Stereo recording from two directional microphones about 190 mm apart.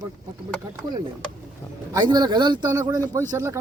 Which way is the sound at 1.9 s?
20° right (ahead or behind).